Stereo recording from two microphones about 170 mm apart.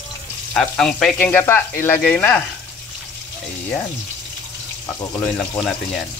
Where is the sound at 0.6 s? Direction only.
5° left (ahead or behind).